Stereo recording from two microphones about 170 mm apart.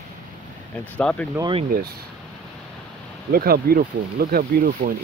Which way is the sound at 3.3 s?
60° right (ahead or behind).